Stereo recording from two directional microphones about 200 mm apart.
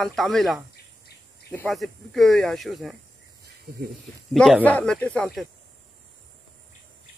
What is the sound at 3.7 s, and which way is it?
Speech, 55° right (ahead or behind).